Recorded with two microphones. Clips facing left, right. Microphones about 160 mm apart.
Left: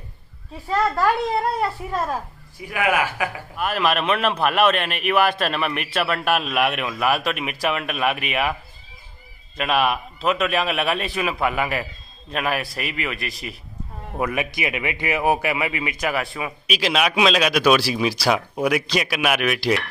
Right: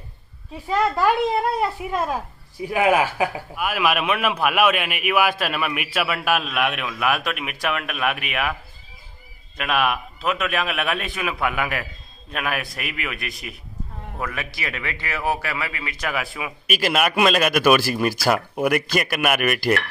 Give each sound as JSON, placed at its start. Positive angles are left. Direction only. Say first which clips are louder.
{"t": 1.6, "sound": "a woman's voice", "louder": "right 1 dB", "side_deg": -15}
{"t": 2.7, "sound": "speech", "louder": "right 3 dB", "side_deg": -30}
{"t": 3.5, "sound": "a man's voice", "louder": "left 2 dB", "side_deg": -5}
{"t": 9.6, "sound": "a man's voice", "louder": "left 2 dB", "side_deg": 0}
{"t": 14.1, "sound": "a man's voice", "louder": "left 6 dB", "side_deg": 15}
{"t": 16.1, "sound": "a man's voice", "louder": "even", "side_deg": -5}